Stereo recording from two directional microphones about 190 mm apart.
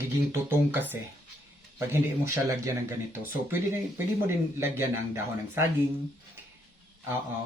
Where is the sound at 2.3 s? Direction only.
15° right (ahead or behind).